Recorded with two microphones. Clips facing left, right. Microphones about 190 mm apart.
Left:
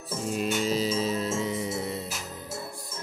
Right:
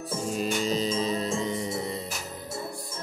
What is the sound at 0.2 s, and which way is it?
Music, centre (ahead or behind).